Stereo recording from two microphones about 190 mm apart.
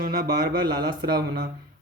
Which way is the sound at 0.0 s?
50° right (ahead or behind).